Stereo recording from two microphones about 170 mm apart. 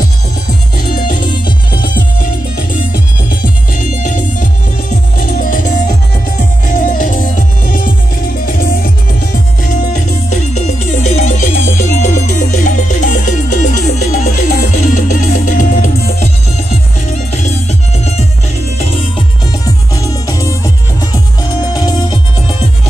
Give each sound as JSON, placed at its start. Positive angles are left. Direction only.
{"t": 0.9, "sound": "music", "side_deg": 50}
{"t": 2.7, "sound": "music", "side_deg": 55}
{"t": 9.6, "sound": "music", "side_deg": 45}
{"t": 17.3, "sound": "music", "side_deg": 45}
{"t": 19.6, "sound": "music", "side_deg": 20}